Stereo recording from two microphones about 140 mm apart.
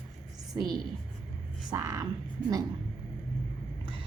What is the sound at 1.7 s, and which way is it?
Speech, 25° right (ahead or behind).